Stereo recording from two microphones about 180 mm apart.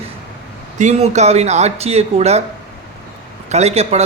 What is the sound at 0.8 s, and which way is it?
A man's voice, 40° right (ahead or behind).